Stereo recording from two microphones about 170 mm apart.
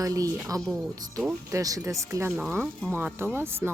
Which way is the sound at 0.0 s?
20° right (ahead or behind).